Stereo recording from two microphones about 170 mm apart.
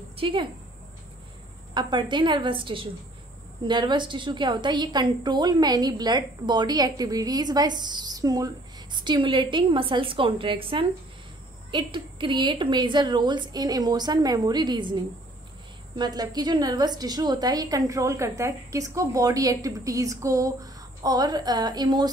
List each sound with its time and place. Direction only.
0.2 s speech: 30° right (ahead or behind)
1.7 s a woman's voice: 30° right (ahead or behind)
16.0 s a woman's voice: 25° right (ahead or behind)